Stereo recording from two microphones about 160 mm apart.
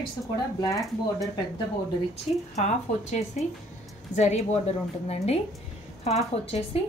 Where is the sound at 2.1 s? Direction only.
45° left (ahead or behind).